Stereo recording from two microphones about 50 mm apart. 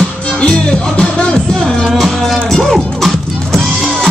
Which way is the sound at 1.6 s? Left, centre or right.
Centre.